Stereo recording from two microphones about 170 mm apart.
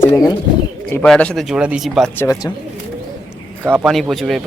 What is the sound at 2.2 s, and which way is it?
Speech, 15° left (ahead or behind).